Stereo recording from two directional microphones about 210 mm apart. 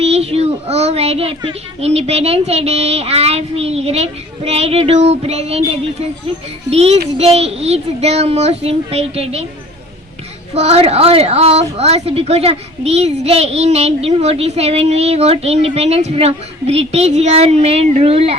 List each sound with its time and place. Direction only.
0.0 s a child's voice: 30° right (ahead or behind)
10.5 s a child's voice: 30° right (ahead or behind)